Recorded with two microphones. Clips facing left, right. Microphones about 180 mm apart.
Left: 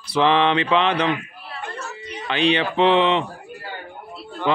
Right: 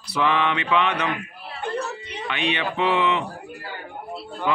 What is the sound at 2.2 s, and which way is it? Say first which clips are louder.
Mantra: left 6 dB; 30° left (ahead or behind).